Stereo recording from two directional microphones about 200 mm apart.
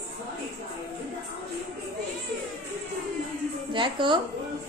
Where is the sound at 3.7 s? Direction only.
25° right (ahead or behind).